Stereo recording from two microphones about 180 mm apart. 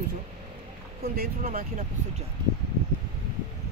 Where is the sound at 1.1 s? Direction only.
55° right (ahead or behind).